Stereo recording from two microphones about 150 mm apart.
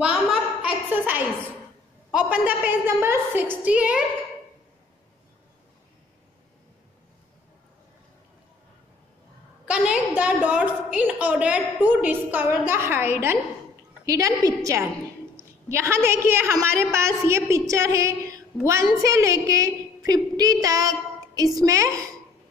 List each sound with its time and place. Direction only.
0.0 s a sound: 5° right (ahead or behind)
2.1 s a woman's voice: 10° right (ahead or behind)
9.7 s a woman's voice: 5° right (ahead or behind); by 22.1 s 20° right (ahead or behind)